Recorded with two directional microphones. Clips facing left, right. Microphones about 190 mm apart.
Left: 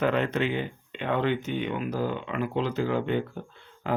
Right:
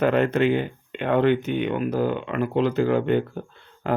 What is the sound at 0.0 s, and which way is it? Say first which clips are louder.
Speech: right 6 dB; 50° right (ahead or behind).